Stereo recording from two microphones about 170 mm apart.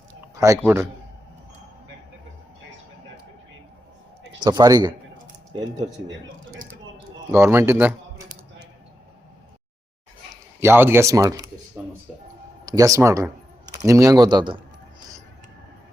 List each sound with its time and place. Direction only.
0.3 s speech: 20° right (ahead or behind)
4.4 s speech: 20° right (ahead or behind)
7.3 s speech: 15° right (ahead or behind)
10.6 s speech: 15° right (ahead or behind)
12.6 s speech: 20° right (ahead or behind)